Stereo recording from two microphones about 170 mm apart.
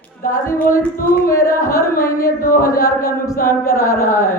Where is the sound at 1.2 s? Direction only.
20° left (ahead or behind).